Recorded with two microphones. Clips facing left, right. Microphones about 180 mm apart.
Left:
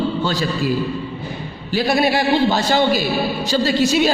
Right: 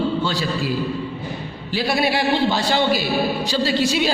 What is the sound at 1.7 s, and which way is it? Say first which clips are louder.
A man's voice: left 3 dB; 45° left (ahead or behind).